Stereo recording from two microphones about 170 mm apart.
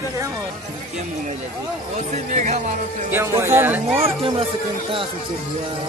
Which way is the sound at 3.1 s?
15° right (ahead or behind).